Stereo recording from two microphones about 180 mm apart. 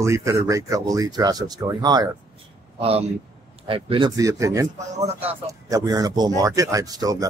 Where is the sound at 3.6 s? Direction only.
30° right (ahead or behind).